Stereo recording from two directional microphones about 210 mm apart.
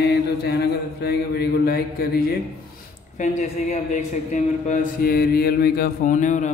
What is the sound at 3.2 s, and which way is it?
Speech, 35° left (ahead or behind).